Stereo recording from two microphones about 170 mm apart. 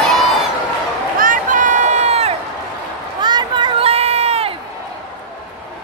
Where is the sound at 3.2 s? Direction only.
25° right (ahead or behind).